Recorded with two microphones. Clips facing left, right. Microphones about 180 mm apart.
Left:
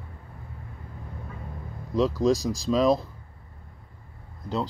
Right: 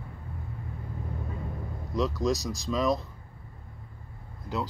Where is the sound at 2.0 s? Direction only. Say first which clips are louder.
Left 5 dB; 30° left (ahead or behind).